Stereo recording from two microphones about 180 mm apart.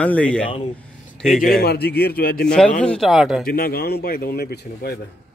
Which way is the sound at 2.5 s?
5° left (ahead or behind).